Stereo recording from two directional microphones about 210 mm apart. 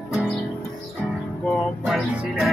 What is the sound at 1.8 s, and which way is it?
Music, 5° right (ahead or behind).